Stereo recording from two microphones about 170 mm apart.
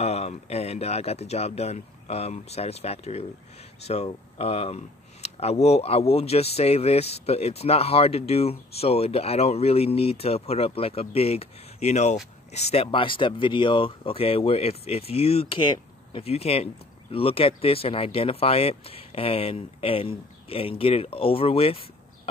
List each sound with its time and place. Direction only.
0.0 s speech: 40° left (ahead or behind)